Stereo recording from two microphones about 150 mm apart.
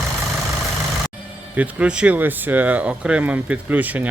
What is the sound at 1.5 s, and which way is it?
Speech, 10° right (ahead or behind).